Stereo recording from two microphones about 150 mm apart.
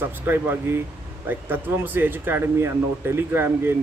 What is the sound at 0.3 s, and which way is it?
Speech, 15° right (ahead or behind).